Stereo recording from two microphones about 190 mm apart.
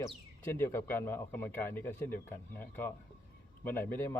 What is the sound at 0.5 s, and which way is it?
A man's voice, 10° left (ahead or behind).